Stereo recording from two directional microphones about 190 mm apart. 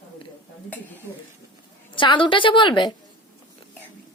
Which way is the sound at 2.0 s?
25° left (ahead or behind).